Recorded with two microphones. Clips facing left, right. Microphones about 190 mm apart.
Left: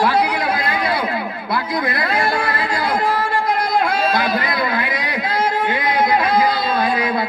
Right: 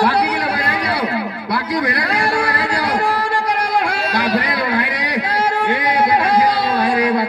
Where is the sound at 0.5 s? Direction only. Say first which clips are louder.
Even; 65° right (ahead or behind).